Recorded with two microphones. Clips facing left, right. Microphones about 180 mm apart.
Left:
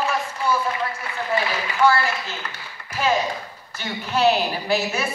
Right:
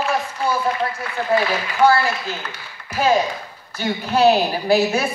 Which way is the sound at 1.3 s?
35° right (ahead or behind).